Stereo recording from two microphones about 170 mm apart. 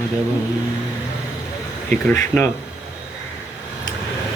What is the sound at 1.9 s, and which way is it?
Speech, 5° left (ahead or behind).